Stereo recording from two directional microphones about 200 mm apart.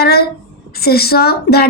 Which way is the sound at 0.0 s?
50° left (ahead or behind).